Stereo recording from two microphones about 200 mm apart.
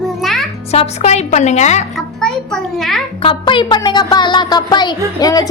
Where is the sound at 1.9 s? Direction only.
5° left (ahead or behind).